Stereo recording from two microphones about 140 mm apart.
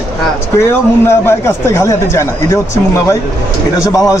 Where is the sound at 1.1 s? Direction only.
20° left (ahead or behind).